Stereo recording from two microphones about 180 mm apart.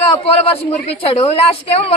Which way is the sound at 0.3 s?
35° left (ahead or behind).